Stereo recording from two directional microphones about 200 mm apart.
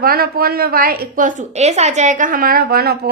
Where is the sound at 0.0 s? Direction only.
50° right (ahead or behind).